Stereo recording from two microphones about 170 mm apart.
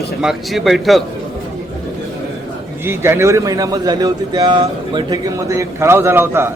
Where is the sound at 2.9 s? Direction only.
15° right (ahead or behind).